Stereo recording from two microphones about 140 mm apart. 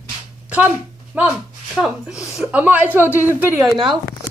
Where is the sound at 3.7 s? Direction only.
35° right (ahead or behind).